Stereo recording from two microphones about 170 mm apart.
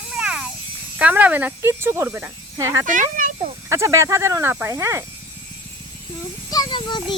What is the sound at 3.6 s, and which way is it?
Speech, 15° right (ahead or behind).